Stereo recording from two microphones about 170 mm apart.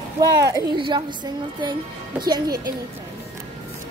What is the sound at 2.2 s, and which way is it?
Speech, 25° right (ahead or behind).